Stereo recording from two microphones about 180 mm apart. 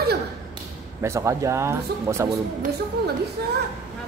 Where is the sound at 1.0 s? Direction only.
15° right (ahead or behind).